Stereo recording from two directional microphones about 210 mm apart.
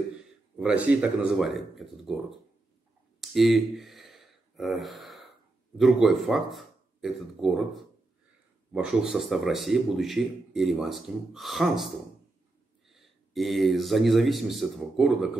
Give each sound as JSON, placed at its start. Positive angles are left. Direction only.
{"t": 0.6, "sound": "speech", "side_deg": -5}
{"t": 3.2, "sound": "a sound", "side_deg": 0}
{"t": 5.8, "sound": "speech", "side_deg": 0}